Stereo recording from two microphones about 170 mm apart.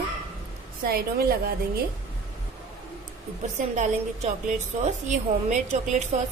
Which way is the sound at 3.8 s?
45° right (ahead or behind).